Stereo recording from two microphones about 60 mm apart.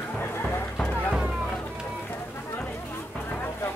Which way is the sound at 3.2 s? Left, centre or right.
Left.